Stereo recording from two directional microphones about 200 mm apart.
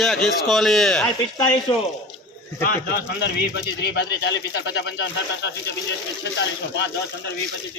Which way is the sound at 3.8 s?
55° left (ahead or behind).